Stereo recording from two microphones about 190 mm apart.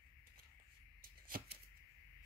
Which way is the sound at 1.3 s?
50° right (ahead or behind).